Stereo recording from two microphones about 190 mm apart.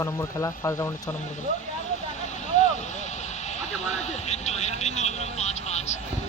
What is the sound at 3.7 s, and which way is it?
Vehicle, 35° left (ahead or behind).